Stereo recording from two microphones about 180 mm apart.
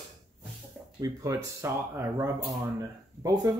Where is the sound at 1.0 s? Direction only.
20° right (ahead or behind).